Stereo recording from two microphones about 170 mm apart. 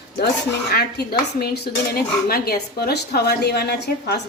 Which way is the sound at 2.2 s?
65° left (ahead or behind).